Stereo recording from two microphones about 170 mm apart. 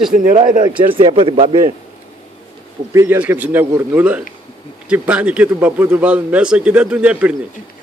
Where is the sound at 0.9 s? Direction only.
30° right (ahead or behind).